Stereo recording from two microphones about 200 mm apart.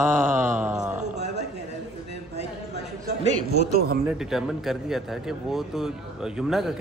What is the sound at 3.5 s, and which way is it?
Speech, 50° right (ahead or behind).